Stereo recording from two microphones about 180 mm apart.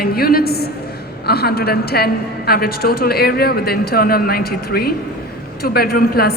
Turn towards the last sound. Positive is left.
turn(degrees=60)  # may be behind; listen again after turning